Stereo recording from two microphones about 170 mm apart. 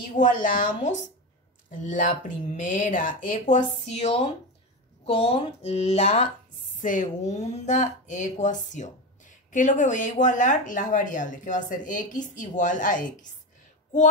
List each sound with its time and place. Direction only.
0.2 s a woman's voice: 50° left (ahead or behind)